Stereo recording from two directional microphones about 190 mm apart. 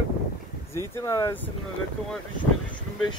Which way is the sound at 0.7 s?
15° left (ahead or behind).